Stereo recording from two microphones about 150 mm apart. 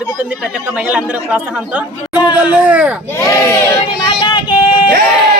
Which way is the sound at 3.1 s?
15° left (ahead or behind).